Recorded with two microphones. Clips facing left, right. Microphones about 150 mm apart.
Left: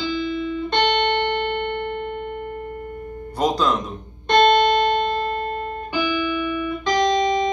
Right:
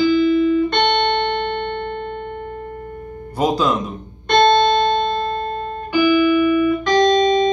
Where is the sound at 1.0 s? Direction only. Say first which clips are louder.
Right 2 dB; 10° left (ahead or behind).